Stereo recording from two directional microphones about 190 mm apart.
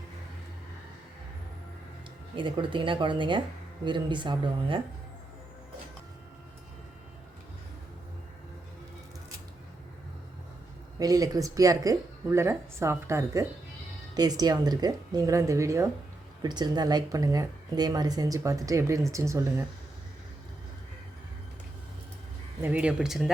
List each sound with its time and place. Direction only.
2.3 s speech: 25° right (ahead or behind)
11.0 s speech: 20° right (ahead or behind)
22.6 s speech: 5° right (ahead or behind)